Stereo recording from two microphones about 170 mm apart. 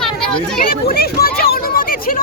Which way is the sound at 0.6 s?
60° left (ahead or behind).